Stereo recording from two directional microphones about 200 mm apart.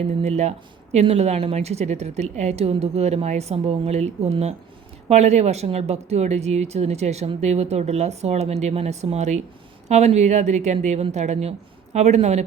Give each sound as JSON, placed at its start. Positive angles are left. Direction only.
{"t": 0.2, "sound": "speech", "side_deg": -35}